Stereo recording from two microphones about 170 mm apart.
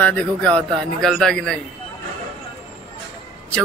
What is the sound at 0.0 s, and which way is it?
Speech, 10° left (ahead or behind).